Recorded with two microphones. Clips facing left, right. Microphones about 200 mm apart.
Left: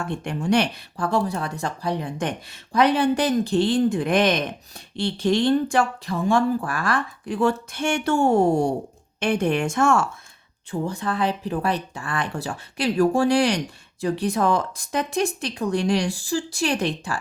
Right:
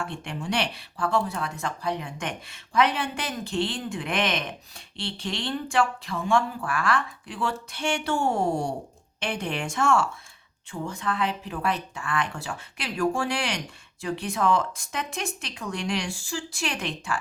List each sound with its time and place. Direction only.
0.0 s a woman's voice: 45° left (ahead or behind)
10.7 s speech: 35° left (ahead or behind)